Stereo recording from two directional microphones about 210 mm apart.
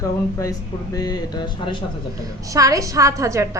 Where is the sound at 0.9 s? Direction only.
20° left (ahead or behind).